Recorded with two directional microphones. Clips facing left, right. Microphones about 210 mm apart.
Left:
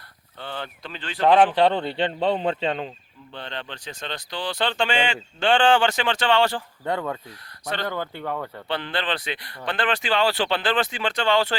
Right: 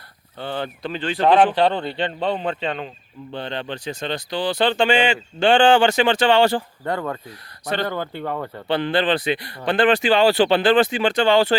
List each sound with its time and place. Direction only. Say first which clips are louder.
0.3 s speech: right 6 dB; 40° right (ahead or behind)
0.9 s speech: right 2 dB; 15° right (ahead or behind)
1.5 s speech: even; 20° left (ahead or behind)
3.3 s speech: right 7 dB; 10° right (ahead or behind)
6.8 s speech: right 1 dB; centre (ahead or behind)
7.6 s speech: right 4 dB; 10° right (ahead or behind)